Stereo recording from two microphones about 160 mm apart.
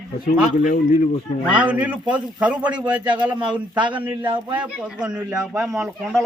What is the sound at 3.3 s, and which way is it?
A man's voice, 30° right (ahead or behind).